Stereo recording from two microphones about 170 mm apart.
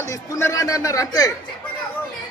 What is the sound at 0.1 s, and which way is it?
A man's voice, 15° left (ahead or behind).